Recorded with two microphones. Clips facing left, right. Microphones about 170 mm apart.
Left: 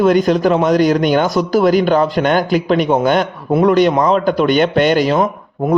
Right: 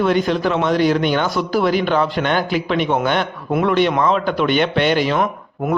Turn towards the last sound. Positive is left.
turn(degrees=35)  # may be behind; listen again after turning